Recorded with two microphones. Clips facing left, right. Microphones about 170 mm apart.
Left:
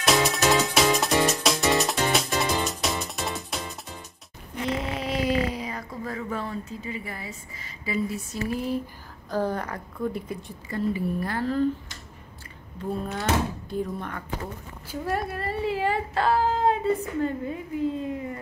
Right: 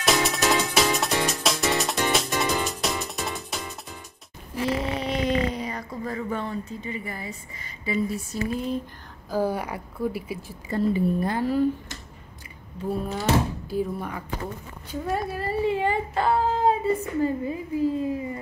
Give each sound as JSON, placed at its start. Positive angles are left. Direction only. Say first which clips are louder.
{"t": 0.0, "sound": "music", "louder": "left 1 dB", "side_deg": 0}
{"t": 4.6, "sound": "a woman's voice", "louder": "right 2 dB", "side_deg": 0}
{"t": 10.7, "sound": "a woman's voice", "louder": "right 4 dB", "side_deg": -25}
{"t": 12.9, "sound": "speech", "louder": "right 2 dB", "side_deg": -5}